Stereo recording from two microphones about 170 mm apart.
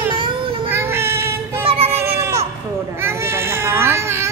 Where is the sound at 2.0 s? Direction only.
15° right (ahead or behind).